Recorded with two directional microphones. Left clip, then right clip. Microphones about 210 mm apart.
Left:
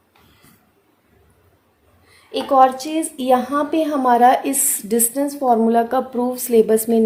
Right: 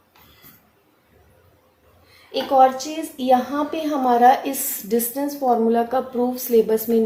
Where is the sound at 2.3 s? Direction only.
50° left (ahead or behind).